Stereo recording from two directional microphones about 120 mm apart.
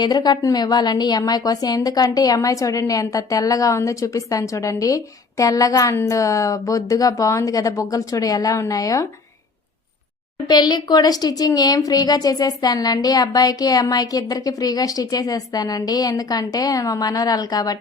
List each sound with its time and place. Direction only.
0.0 s a woman's voice: 35° left (ahead or behind)
10.5 s a woman's voice: 35° left (ahead or behind)